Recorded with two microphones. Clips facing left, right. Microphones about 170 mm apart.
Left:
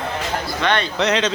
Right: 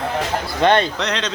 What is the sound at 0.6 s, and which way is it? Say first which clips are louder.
Speech: right 6 dB; 45° right (ahead or behind).